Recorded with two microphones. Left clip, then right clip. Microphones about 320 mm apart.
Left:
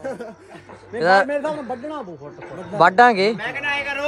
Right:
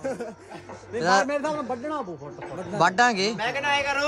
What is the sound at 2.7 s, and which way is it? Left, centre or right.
Speech, centre.